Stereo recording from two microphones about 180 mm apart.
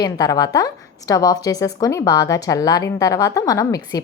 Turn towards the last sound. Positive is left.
turn(degrees=20)  # may be behind; listen again after turning